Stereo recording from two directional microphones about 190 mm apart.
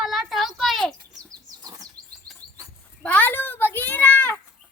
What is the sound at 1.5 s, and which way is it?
Bird, 20° right (ahead or behind).